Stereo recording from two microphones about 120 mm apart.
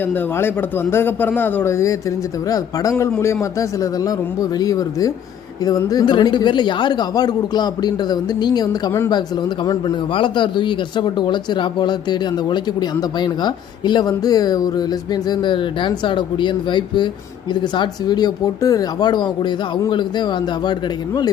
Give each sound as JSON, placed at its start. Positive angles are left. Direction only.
{"t": 0.0, "sound": "a man's voice", "side_deg": 15}